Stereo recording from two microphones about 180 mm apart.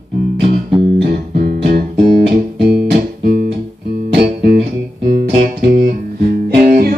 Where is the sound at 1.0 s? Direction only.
55° right (ahead or behind).